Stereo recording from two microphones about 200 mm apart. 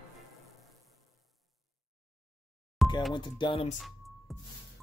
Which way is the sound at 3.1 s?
25° left (ahead or behind).